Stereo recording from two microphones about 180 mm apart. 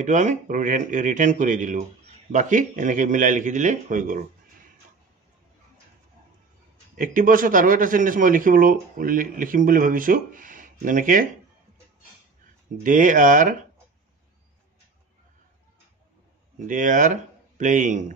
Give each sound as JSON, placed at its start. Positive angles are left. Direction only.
{"t": 0.0, "sound": "a man's voice", "side_deg": -40}
{"t": 7.0, "sound": "a man's voice", "side_deg": -50}
{"t": 12.8, "sound": "a man's voice", "side_deg": -45}
{"t": 16.5, "sound": "speech", "side_deg": -45}